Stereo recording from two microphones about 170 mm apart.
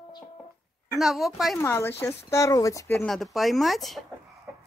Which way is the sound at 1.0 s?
Centre (ahead or behind).